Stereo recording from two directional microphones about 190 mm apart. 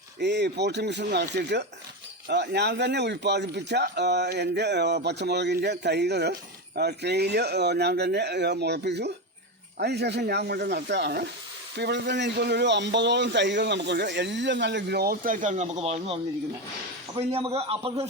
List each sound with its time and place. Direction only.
0.2 s a man's voice: 65° right (ahead or behind); by 18.0 s 30° right (ahead or behind)